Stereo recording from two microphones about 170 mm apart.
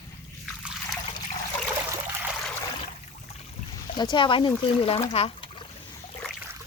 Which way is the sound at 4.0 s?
25° left (ahead or behind).